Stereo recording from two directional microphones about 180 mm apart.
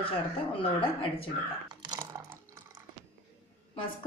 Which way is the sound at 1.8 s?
20° right (ahead or behind).